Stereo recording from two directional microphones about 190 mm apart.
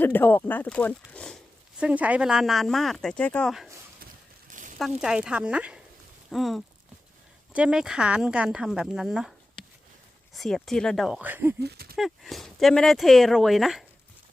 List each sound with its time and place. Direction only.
0.0 s speech: 10° left (ahead or behind)
1.8 s speech: 5° right (ahead or behind)
4.4 s a sound: 40° right (ahead or behind)
4.8 s speech: 5° right (ahead or behind)
11.6 s speech: 55° right (ahead or behind)
11.9 s speech: centre (ahead or behind)